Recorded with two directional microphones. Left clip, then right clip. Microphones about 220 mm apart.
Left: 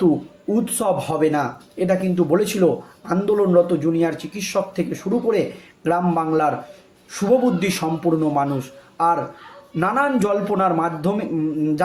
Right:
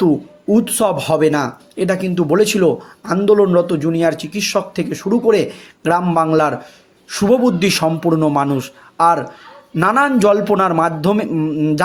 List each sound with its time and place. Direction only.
0.5 s a man's voice: 40° right (ahead or behind)